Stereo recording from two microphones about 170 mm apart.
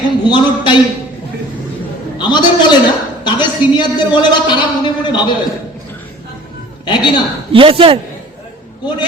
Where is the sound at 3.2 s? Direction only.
25° left (ahead or behind).